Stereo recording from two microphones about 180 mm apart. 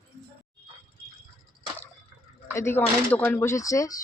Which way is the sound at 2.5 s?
15° left (ahead or behind).